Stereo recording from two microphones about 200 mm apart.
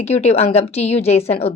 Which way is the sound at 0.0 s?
30° left (ahead or behind).